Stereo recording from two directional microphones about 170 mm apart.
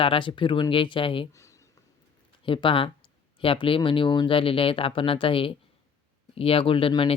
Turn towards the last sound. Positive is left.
turn(degrees=30)  # may be behind; listen again after turning